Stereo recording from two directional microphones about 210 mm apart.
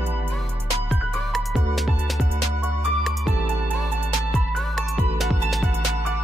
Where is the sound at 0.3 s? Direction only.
Centre (ahead or behind).